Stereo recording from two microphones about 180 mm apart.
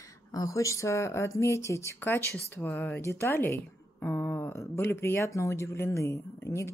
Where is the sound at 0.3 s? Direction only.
20° left (ahead or behind).